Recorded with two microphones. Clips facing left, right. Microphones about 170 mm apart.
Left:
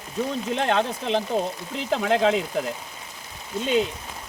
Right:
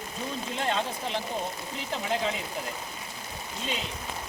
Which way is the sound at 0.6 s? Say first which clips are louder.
Left 5 dB; 70° left (ahead or behind).